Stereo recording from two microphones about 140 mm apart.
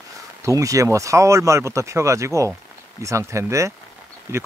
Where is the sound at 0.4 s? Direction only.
20° right (ahead or behind).